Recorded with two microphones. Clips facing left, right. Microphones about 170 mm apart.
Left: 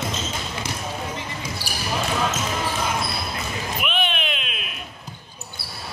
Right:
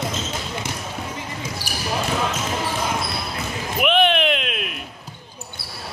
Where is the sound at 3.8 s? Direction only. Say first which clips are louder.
Right 10 dB; 75° right (ahead or behind).